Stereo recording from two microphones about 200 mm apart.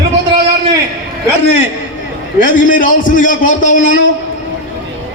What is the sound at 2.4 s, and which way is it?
A man's voice, 40° left (ahead or behind).